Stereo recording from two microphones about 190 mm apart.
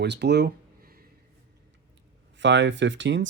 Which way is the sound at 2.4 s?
70° right (ahead or behind).